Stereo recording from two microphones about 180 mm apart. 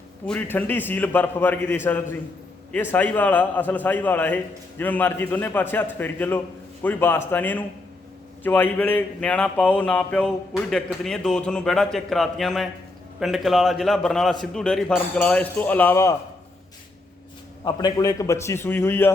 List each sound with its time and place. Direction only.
0.3 s a man's voice: 10° left (ahead or behind)
17.7 s speech: 20° left (ahead or behind)